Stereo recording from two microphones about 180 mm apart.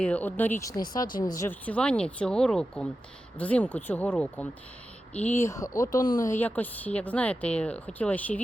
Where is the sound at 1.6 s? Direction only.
5° left (ahead or behind).